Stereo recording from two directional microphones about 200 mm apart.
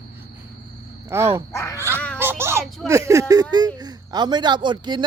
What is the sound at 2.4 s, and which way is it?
A man's voice, 10° right (ahead or behind).